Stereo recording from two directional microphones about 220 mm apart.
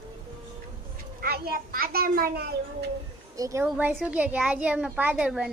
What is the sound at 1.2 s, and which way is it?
A child's voice, 45° right (ahead or behind).